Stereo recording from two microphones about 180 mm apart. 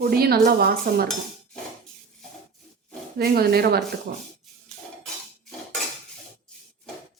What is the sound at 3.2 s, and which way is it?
Dishes, 60° right (ahead or behind).